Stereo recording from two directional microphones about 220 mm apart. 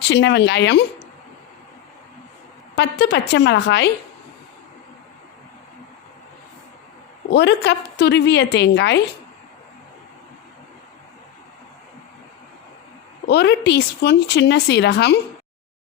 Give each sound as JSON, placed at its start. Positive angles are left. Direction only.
{"t": 0.1, "sound": "a woman's voice", "side_deg": 55}
{"t": 2.7, "sound": "a woman's voice", "side_deg": 50}
{"t": 7.3, "sound": "a woman's voice", "side_deg": 50}
{"t": 13.2, "sound": "a woman's voice", "side_deg": 50}